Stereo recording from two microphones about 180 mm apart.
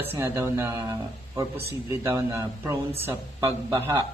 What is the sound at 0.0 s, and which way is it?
Speech, 15° right (ahead or behind).